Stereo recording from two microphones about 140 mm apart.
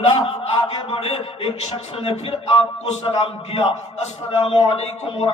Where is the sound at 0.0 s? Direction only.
45° left (ahead or behind).